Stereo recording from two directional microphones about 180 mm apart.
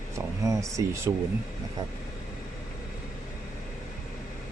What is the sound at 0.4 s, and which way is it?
Speech, 15° right (ahead or behind).